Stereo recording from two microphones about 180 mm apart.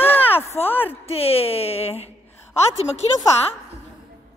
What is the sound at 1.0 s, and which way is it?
Speech, 35° left (ahead or behind).